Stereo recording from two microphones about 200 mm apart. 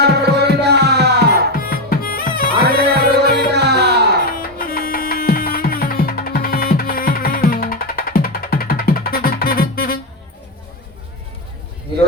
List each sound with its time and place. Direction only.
0.0 s music: 55° right (ahead or behind)
1.5 s music: 50° left (ahead or behind)
2.7 s music: 55° right (ahead or behind)
4.5 s music: 45° left (ahead or behind)